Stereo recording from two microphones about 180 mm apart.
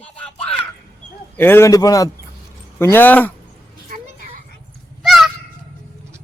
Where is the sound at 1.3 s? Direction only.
10° left (ahead or behind).